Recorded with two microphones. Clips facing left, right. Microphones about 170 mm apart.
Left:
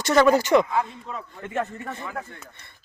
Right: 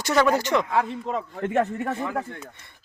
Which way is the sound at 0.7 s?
90° right.